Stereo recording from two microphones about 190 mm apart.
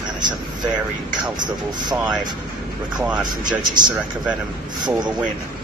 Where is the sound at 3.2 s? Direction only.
20° right (ahead or behind).